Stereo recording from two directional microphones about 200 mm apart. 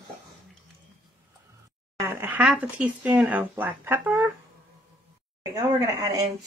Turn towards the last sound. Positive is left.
turn(degrees=-15)  # may be behind; listen again after turning